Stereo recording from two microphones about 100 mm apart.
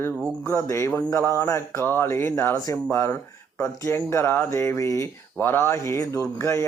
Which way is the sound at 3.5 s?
30° left (ahead or behind).